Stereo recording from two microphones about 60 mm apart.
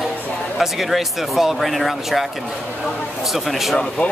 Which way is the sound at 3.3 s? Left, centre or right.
Centre.